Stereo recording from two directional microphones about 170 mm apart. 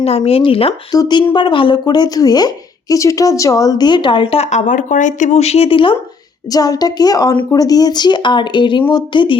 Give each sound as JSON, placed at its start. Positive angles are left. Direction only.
{"t": 0.0, "sound": "a woman's voice", "side_deg": 35}